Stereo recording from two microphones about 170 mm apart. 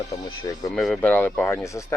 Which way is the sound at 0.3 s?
20° left (ahead or behind).